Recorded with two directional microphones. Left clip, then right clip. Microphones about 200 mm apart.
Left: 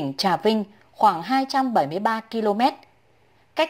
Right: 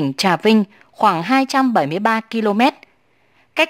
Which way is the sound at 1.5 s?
25° right (ahead or behind).